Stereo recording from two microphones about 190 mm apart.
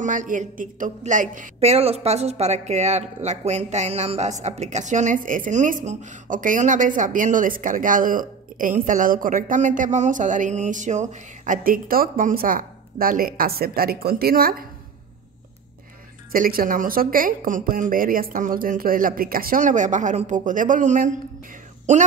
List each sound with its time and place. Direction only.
0.0 s speech: 40° right (ahead or behind)
16.3 s speech: 50° right (ahead or behind)